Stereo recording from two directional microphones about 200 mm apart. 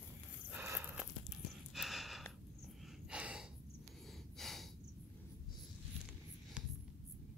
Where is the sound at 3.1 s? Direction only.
5° right (ahead or behind).